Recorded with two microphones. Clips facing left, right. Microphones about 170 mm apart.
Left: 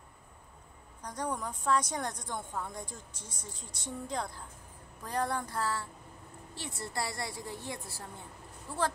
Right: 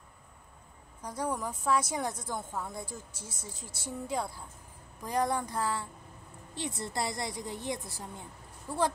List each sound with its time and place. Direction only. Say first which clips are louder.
1.0 s a woman's voice: right 2 dB; 10° right (ahead or behind)